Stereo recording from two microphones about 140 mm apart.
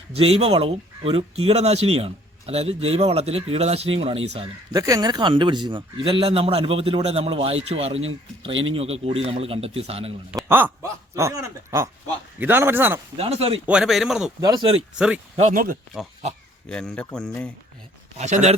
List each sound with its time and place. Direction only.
0.1 s speech: 45° right (ahead or behind)
4.7 s a man's voice: 25° right (ahead or behind); by 10.2 s 45° right (ahead or behind)
10.5 s speech: 20° right (ahead or behind)
13.1 s speech: 45° right (ahead or behind)
13.7 s a man's voice: 5° right (ahead or behind)
14.4 s a man's voice: 35° right (ahead or behind)
14.9 s speech: 5° right (ahead or behind)
15.5 s speech: 90° right
16.6 s a man's voice: 5° left (ahead or behind)
18.2 s speech: 55° right (ahead or behind)